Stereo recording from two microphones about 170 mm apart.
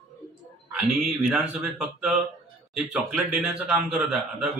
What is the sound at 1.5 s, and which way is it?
A man's voice, 5° right (ahead or behind).